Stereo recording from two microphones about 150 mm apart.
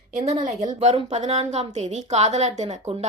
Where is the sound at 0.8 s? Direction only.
45° right (ahead or behind).